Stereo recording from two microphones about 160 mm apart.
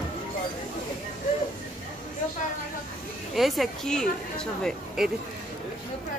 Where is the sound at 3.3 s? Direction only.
Centre (ahead or behind).